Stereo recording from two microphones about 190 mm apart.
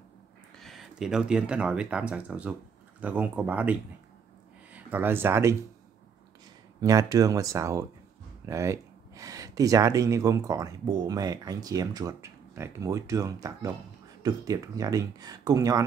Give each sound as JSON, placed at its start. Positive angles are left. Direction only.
{"t": 0.6, "sound": "speech", "side_deg": 0}
{"t": 4.7, "sound": "speech", "side_deg": -10}
{"t": 6.8, "sound": "speech", "side_deg": -20}